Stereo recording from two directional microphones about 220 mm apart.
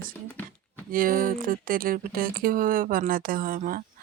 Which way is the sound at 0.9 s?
40° right (ahead or behind).